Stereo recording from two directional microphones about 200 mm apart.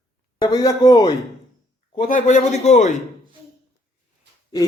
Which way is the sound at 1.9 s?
45° left (ahead or behind).